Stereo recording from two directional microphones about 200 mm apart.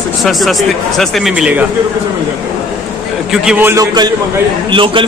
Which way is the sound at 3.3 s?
5° right (ahead or behind).